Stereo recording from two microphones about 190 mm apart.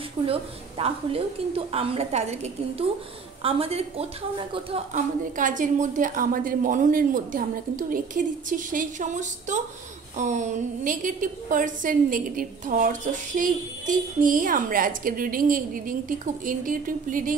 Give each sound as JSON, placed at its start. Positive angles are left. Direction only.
{"t": 0.3, "sound": "a woman's voice", "side_deg": -30}